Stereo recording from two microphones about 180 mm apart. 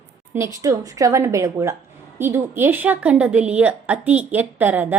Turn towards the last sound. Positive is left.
turn(degrees=-10)  # may be behind; listen again after turning